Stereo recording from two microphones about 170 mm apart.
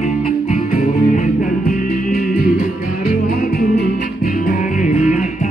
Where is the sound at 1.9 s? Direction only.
65° left (ahead or behind).